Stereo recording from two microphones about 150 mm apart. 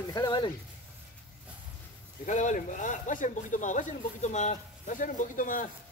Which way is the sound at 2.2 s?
55° left (ahead or behind).